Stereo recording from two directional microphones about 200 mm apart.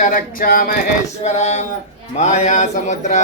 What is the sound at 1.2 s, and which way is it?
Speech, 35° left (ahead or behind).